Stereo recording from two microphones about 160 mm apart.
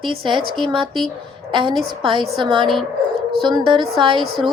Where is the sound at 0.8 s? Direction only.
Centre (ahead or behind).